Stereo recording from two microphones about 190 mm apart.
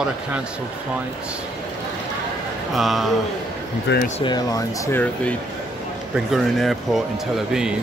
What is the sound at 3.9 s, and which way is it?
Speech, 70° left (ahead or behind).